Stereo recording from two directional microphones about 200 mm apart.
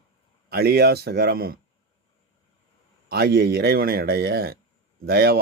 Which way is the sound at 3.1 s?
50° right (ahead or behind).